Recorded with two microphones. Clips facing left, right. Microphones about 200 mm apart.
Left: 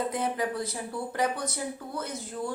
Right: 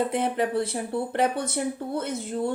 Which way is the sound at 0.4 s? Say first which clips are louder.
Right 5 dB; 30° right (ahead or behind).